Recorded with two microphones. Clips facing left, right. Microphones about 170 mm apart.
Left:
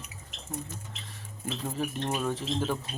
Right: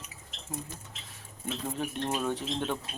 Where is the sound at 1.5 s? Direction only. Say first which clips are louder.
Left 1 dB; centre (ahead or behind).